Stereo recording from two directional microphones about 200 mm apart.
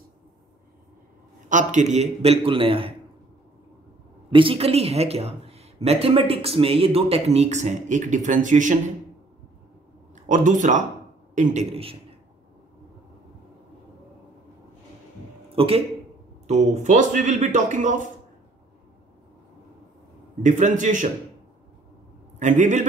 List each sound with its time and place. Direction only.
1.5 s a man's voice: 40° right (ahead or behind)
4.3 s a man's voice: 25° right (ahead or behind)
10.2 s a man's voice: 40° right (ahead or behind)
15.5 s a man's voice: 30° right (ahead or behind)
20.4 s a man's voice: 40° right (ahead or behind)
22.4 s a man's voice: 40° right (ahead or behind)